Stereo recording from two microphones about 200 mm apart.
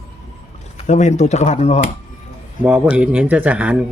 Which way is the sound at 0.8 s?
35° left (ahead or behind).